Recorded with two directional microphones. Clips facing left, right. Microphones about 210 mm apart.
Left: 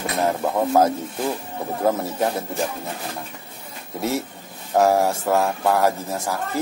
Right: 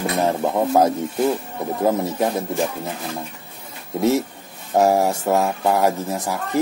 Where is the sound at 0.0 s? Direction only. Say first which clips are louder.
Right 2 dB; 20° right (ahead or behind).